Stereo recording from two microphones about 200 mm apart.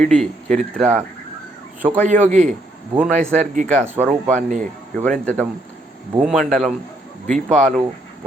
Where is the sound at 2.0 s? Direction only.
35° right (ahead or behind).